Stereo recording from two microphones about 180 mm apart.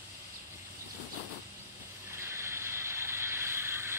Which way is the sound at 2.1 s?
15° right (ahead or behind).